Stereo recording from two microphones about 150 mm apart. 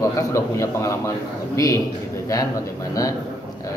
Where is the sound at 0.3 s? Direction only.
20° left (ahead or behind).